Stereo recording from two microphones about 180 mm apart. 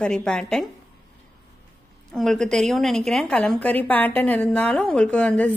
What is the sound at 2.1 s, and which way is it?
A woman's voice, centre (ahead or behind).